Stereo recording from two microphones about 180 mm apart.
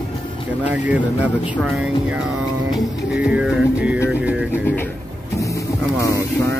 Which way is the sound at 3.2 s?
5° right (ahead or behind).